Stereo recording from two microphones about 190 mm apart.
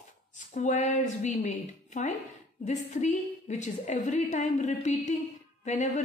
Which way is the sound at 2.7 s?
40° left (ahead or behind).